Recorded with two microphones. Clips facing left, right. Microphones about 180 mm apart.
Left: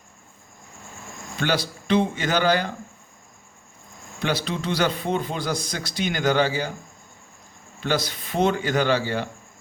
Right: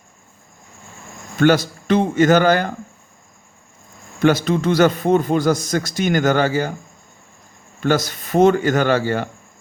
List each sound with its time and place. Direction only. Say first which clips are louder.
1.4 s a man's voice: right 10 dB; 50° right (ahead or behind)
4.2 s a man's voice: right 10 dB; 50° right (ahead or behind)
7.8 s a man's voice: right 6 dB; 45° right (ahead or behind)